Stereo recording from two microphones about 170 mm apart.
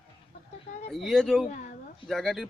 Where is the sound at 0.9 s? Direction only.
Centre (ahead or behind).